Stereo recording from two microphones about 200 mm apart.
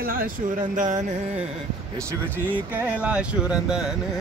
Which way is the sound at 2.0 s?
10° right (ahead or behind).